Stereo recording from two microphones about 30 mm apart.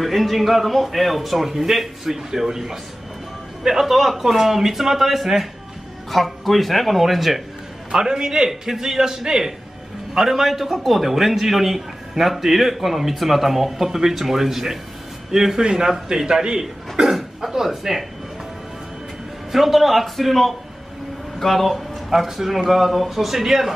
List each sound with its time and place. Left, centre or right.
0.0 s a man's voice: centre
3.8 s a man's voice: centre
7.9 s a man's voice: right
8.5 s a man's voice: centre; by 16.6 s right
17.0 s speech: centre
19.5 s a man's voice: centre
21.6 s a man's voice: centre